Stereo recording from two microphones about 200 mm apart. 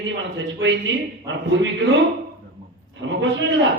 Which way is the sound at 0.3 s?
65° right (ahead or behind).